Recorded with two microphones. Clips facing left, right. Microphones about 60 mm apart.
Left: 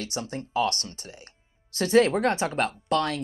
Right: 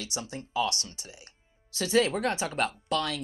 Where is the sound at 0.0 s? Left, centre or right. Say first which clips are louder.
Left 4 dB; left.